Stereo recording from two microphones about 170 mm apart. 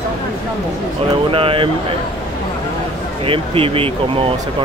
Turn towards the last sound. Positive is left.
turn(degrees=-35)  # may be behind; listen again after turning